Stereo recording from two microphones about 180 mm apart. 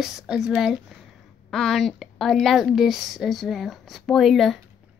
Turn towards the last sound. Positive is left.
turn(degrees=0)  # may be behind; listen again after turning